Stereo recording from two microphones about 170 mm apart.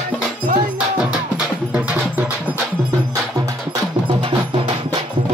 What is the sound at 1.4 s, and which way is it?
Music, 5° right (ahead or behind).